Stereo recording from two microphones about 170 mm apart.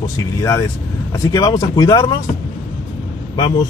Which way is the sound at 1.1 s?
20° left (ahead or behind).